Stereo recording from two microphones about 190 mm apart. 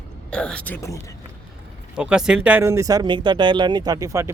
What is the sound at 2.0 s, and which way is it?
Speech, 5° right (ahead or behind).